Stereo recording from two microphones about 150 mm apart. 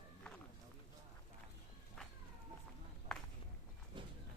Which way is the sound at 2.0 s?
5° left (ahead or behind).